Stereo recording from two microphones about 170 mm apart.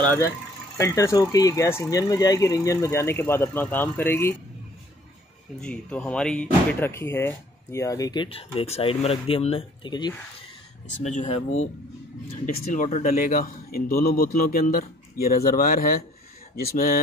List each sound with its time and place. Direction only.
0.0 s speech: 10° left (ahead or behind)
5.6 s speech: 5° left (ahead or behind); by 10.1 s 25° left (ahead or behind)
11.0 s speech: 45° left (ahead or behind)
12.7 s speech: 45° left (ahead or behind)